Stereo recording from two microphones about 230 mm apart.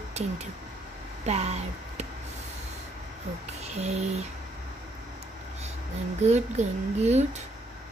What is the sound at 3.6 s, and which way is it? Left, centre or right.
Speech, right.